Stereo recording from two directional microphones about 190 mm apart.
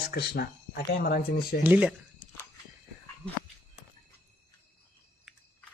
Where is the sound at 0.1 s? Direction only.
55° left (ahead or behind).